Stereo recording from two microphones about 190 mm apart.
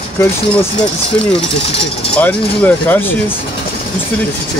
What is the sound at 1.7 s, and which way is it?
Speech, 30° left (ahead or behind).